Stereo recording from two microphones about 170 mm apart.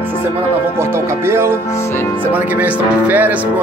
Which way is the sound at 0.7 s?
15° right (ahead or behind).